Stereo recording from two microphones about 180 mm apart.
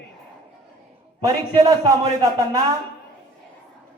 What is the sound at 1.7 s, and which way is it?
Speech, 20° right (ahead or behind).